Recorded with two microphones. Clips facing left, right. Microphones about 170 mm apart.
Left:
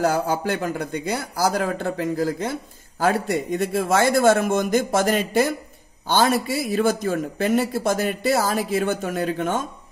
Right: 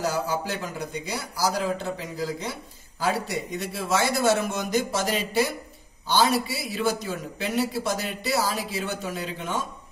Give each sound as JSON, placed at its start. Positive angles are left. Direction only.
{"t": 0.0, "sound": "a man's voice", "side_deg": 55}